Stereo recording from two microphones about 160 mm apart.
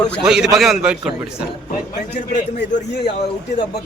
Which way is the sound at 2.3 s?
50° left (ahead or behind).